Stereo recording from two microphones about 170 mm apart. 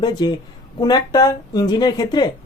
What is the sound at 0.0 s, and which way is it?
Speech, 25° left (ahead or behind).